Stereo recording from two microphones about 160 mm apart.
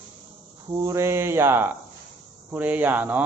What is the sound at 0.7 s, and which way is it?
Speech, 25° right (ahead or behind).